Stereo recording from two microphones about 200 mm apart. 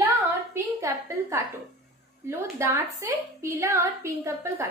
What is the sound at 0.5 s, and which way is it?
A woman's voice, 15° right (ahead or behind).